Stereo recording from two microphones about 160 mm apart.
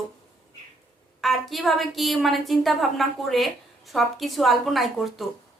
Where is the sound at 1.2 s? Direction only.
Centre (ahead or behind).